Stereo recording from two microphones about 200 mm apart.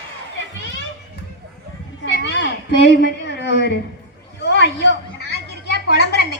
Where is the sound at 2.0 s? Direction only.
60° left (ahead or behind).